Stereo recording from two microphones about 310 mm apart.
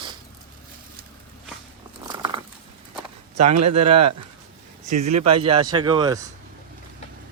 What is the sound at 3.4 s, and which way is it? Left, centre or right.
Speech, right.